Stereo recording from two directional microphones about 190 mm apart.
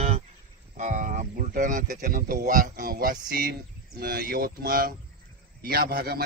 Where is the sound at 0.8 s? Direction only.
40° right (ahead or behind).